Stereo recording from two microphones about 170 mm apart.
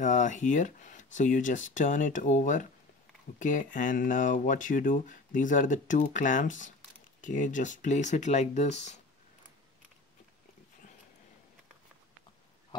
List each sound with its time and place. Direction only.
0.0 s speech: 45° left (ahead or behind)